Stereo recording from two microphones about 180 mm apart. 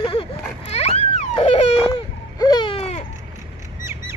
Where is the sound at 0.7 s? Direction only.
35° left (ahead or behind).